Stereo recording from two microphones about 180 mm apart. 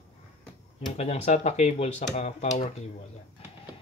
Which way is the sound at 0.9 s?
35° left (ahead or behind).